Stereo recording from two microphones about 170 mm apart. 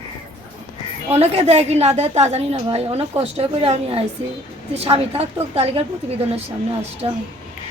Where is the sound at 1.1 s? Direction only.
40° right (ahead or behind).